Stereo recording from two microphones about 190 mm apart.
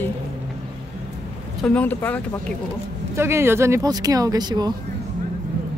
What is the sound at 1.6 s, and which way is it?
Speech, 5° left (ahead or behind).